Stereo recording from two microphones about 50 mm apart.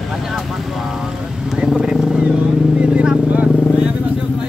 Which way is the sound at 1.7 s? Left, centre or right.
Centre.